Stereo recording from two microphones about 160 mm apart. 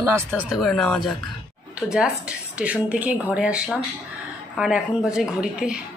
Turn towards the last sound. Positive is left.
turn(degrees=-5)  # may be behind; listen again after turning